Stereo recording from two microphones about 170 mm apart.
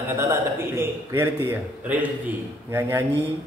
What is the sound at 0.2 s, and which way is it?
A man's voice, 15° right (ahead or behind).